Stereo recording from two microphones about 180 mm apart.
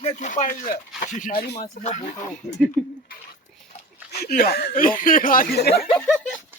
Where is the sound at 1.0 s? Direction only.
45° left (ahead or behind).